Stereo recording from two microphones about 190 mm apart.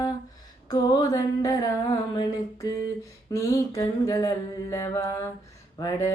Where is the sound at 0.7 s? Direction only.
20° left (ahead or behind).